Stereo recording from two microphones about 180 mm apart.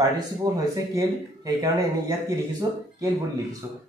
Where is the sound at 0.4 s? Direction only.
20° right (ahead or behind).